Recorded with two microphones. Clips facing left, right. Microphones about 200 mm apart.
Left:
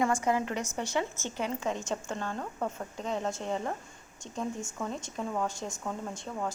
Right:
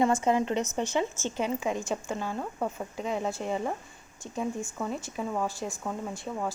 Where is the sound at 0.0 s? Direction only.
25° right (ahead or behind).